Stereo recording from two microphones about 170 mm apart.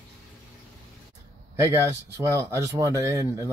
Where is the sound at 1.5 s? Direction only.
15° right (ahead or behind).